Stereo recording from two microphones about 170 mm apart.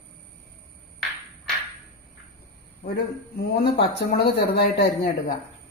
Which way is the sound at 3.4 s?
75° left (ahead or behind).